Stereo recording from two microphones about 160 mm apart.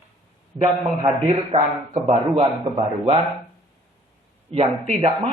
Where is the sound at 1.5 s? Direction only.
45° right (ahead or behind).